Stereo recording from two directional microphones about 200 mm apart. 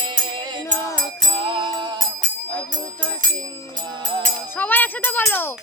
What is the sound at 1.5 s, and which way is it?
Music, 20° right (ahead or behind).